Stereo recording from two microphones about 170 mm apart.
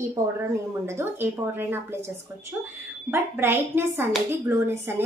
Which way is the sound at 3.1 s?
15° right (ahead or behind).